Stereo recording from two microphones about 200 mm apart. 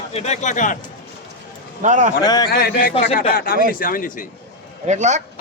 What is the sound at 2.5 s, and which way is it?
Speech, 45° left (ahead or behind).